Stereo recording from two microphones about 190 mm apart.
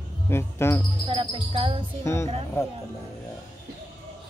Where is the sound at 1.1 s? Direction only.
25° right (ahead or behind).